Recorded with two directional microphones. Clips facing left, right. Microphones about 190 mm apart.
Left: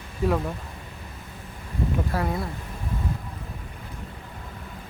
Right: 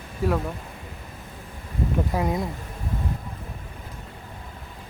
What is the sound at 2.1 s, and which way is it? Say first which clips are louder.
Speech: right 4 dB; 20° right (ahead or behind).